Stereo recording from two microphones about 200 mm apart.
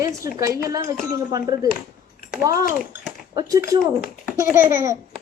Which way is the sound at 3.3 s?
15° right (ahead or behind).